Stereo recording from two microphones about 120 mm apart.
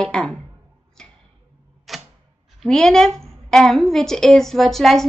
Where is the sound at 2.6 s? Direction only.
5° left (ahead or behind).